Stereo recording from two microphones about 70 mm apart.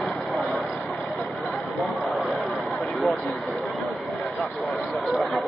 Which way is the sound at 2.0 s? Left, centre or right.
Centre.